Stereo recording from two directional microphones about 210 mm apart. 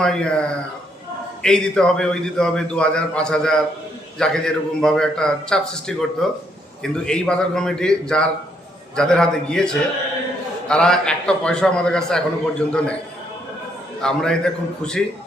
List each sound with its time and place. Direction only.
0.0 s a man's voice: 5° left (ahead or behind)
14.0 s a man's voice: 5° left (ahead or behind)